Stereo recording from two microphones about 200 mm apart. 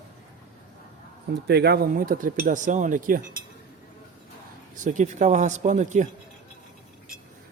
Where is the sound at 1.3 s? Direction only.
55° right (ahead or behind).